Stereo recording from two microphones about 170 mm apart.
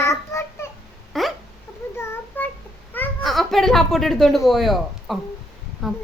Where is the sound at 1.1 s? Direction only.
Centre (ahead or behind).